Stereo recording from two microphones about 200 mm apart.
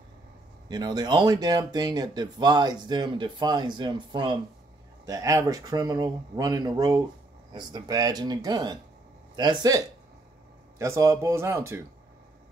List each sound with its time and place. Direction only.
0.7 s speech: 20° right (ahead or behind)